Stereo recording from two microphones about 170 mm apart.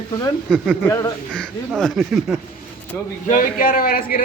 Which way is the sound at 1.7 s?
Centre (ahead or behind).